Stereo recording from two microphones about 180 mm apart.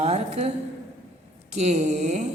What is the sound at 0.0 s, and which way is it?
A woman's voice, 35° right (ahead or behind).